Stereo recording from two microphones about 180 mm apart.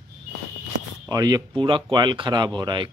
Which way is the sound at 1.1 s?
20° right (ahead or behind).